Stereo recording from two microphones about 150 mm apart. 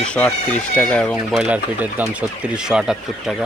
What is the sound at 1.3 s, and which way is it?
Speech, 5° right (ahead or behind).